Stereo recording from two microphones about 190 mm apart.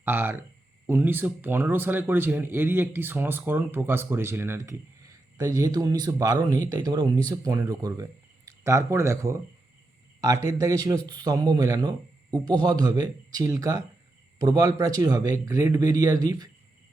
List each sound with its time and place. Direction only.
0.0 s a man's voice: 10° right (ahead or behind)